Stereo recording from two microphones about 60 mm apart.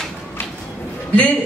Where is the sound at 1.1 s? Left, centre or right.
Left.